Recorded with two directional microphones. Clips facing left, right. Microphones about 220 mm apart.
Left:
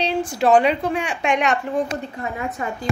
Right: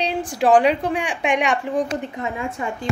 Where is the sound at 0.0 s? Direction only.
15° right (ahead or behind).